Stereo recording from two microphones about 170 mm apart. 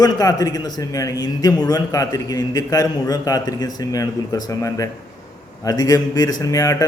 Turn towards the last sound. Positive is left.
turn(degrees=20)  # may be behind; listen again after turning